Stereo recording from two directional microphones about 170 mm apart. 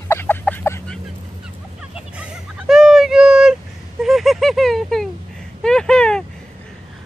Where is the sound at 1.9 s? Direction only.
5° right (ahead or behind).